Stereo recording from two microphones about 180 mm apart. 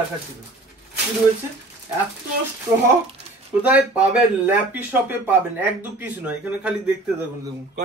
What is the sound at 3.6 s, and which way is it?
Speech, 10° right (ahead or behind).